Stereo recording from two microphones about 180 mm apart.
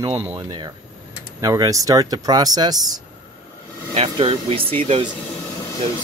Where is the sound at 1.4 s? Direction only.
20° right (ahead or behind).